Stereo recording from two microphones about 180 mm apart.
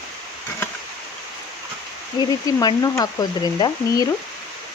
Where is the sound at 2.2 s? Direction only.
20° left (ahead or behind).